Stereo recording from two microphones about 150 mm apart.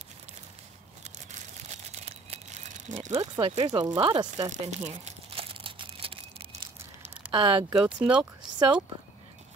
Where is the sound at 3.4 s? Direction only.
40° right (ahead or behind).